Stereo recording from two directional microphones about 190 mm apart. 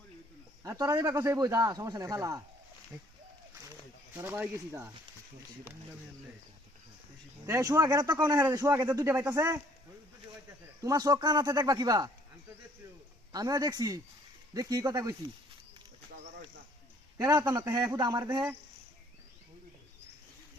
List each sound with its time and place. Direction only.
0.6 s a man's voice: 15° right (ahead or behind)
4.1 s a man's voice: 10° right (ahead or behind)
7.4 s a man's voice: 15° right (ahead or behind)
10.8 s speech: 20° right (ahead or behind)
13.3 s a man's voice: 20° right (ahead or behind)
17.2 s speech: 20° right (ahead or behind)